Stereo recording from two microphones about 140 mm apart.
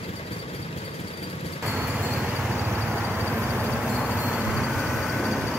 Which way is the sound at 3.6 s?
5° left (ahead or behind).